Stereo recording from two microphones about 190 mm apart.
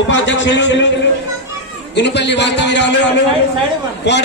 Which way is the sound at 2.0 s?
65° left (ahead or behind).